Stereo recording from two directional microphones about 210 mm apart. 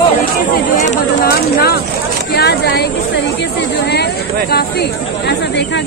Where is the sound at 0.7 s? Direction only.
40° left (ahead or behind).